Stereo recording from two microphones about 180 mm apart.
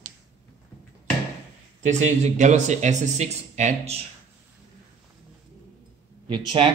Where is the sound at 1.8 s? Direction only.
40° right (ahead or behind).